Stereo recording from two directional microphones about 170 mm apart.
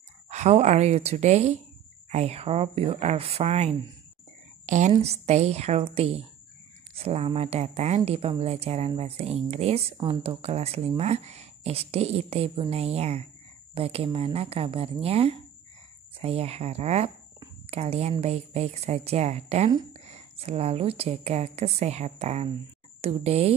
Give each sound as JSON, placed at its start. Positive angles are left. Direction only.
{"t": 0.3, "sound": "a woman's voice", "side_deg": -40}